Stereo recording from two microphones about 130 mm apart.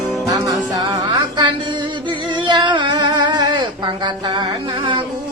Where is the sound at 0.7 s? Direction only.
30° right (ahead or behind).